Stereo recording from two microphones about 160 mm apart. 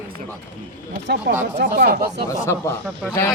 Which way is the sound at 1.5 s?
85° right.